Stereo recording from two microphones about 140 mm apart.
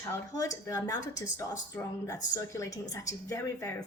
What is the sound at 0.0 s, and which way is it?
A woman's voice, 25° left (ahead or behind).